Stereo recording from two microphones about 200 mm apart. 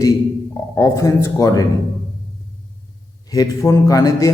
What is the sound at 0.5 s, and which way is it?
A man's voice, 15° left (ahead or behind).